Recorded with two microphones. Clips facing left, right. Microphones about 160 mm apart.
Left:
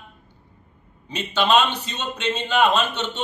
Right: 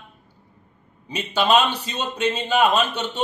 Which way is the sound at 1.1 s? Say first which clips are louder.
Even; 10° right (ahead or behind).